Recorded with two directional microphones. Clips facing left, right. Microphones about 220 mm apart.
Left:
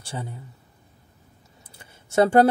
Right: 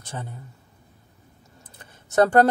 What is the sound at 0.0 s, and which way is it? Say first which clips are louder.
Speech: left 2 dB; 10° left (ahead or behind).